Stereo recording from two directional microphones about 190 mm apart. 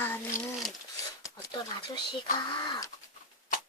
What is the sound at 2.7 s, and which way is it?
Speech, 20° left (ahead or behind).